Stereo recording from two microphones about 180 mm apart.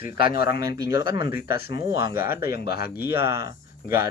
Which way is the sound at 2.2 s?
10° right (ahead or behind).